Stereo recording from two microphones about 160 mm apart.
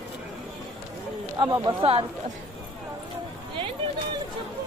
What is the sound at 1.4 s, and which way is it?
Speech, 30° right (ahead or behind).